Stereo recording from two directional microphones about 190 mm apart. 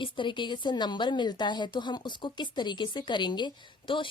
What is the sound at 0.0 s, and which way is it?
A woman's voice, 25° left (ahead or behind).